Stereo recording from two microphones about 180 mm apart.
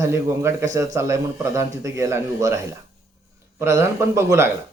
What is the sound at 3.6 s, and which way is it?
Speech, 15° right (ahead or behind).